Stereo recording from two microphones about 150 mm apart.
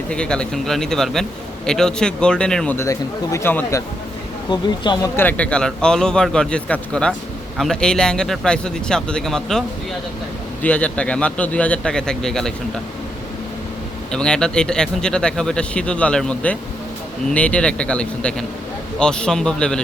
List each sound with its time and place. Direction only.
0.1 s speech: 5° left (ahead or behind)
2.7 s a man's voice: 20° left (ahead or behind)
4.5 s speech: 30° left (ahead or behind)
5.1 s a man's voice: 10° left (ahead or behind)
14.1 s a man's voice: 5° left (ahead or behind)